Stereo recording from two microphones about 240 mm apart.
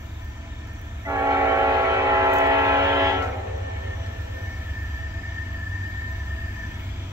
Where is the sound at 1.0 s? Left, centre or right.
Centre.